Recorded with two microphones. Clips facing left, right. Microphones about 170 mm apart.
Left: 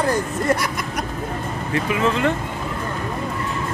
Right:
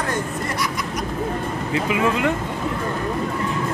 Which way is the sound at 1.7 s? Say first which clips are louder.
Even; 15° right (ahead or behind).